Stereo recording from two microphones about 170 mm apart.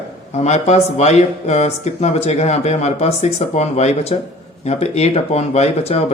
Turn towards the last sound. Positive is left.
turn(degrees=40)  # may be behind; listen again after turning